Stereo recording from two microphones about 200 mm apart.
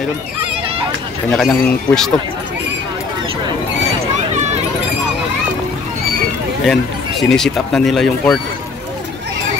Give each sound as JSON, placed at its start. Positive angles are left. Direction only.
{"t": 0.4, "sound": "a sound", "side_deg": -25}
{"t": 1.3, "sound": "speech", "side_deg": 5}
{"t": 6.6, "sound": "speech", "side_deg": 0}